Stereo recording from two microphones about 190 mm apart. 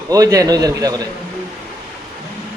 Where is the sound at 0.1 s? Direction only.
20° right (ahead or behind).